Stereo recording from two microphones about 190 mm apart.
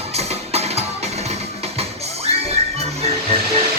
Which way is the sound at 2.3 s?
35° right (ahead or behind).